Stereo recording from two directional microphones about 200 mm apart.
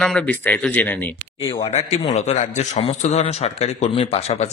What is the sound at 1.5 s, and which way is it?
A man's voice, 30° left (ahead or behind).